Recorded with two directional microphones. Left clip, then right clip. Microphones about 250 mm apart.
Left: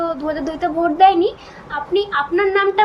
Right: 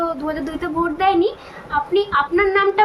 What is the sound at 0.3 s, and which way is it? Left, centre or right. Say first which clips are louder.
A child's voice: left 3 dB; centre.